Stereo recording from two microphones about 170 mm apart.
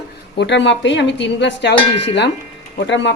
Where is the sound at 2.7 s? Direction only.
90° left.